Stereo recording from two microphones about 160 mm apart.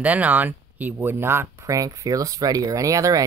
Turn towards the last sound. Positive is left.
turn(degrees=-20)  # may be behind; listen again after turning